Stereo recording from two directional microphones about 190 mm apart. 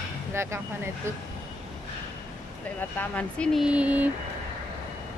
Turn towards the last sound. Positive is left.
turn(degrees=-10)  # may be behind; listen again after turning